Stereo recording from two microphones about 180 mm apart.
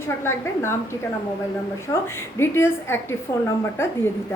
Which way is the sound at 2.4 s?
15° left (ahead or behind).